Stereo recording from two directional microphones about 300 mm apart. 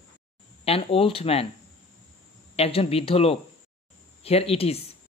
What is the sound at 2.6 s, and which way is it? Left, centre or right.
Speech, centre.